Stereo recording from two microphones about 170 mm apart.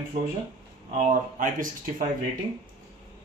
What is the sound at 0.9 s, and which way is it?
Speech, 50° right (ahead or behind).